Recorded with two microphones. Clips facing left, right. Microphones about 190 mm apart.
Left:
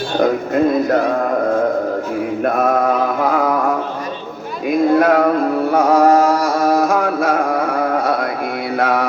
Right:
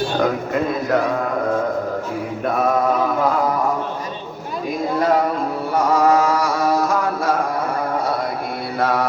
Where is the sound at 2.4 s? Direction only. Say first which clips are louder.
Left 2 dB; 55° left (ahead or behind).